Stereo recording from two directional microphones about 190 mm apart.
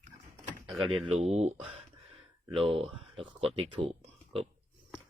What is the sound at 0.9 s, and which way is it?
Speech, 30° right (ahead or behind).